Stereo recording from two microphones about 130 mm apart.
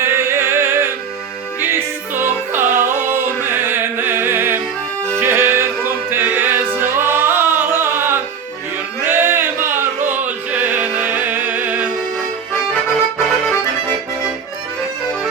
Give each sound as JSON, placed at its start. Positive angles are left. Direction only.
{"t": 0.0, "sound": "music", "side_deg": -20}